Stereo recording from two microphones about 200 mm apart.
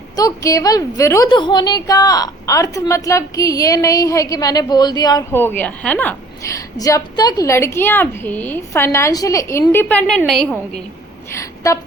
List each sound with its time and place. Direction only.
0.2 s a woman's voice: 15° left (ahead or behind)
11.3 s speech: 15° left (ahead or behind)